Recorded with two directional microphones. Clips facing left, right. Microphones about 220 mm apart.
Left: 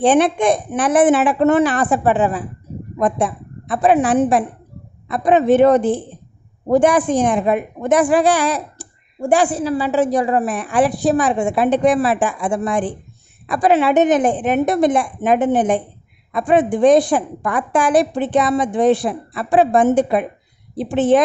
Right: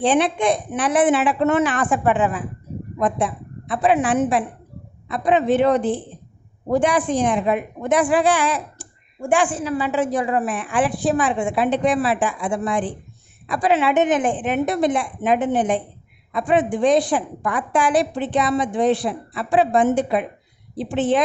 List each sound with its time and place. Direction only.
0.0 s a woman's voice: 50° left (ahead or behind)
3.0 s a woman's voice: 45° left (ahead or behind)